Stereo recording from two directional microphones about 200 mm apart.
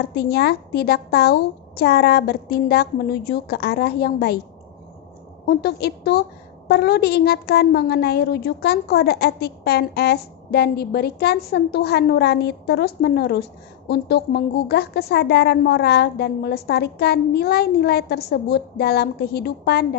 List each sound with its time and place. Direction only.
0.1 s a woman's voice: 55° left (ahead or behind)
5.5 s a woman's voice: 55° left (ahead or behind)